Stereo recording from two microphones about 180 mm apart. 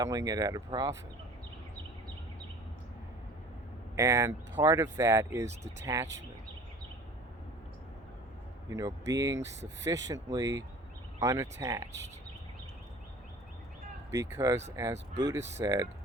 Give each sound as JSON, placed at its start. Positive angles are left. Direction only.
{"t": 0.0, "sound": "speech", "side_deg": -20}
{"t": 3.9, "sound": "speech", "side_deg": -15}
{"t": 8.7, "sound": "speech", "side_deg": -20}
{"t": 14.1, "sound": "speech", "side_deg": -15}